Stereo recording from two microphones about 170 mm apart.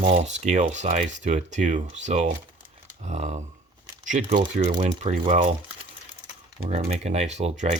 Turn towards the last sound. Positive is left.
turn(degrees=-40)  # may be behind; listen again after turning